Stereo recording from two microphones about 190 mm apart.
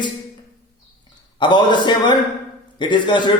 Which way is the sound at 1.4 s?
25° left (ahead or behind).